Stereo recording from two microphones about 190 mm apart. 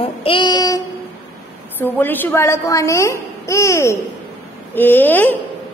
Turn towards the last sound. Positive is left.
turn(degrees=10)  # may be behind; listen again after turning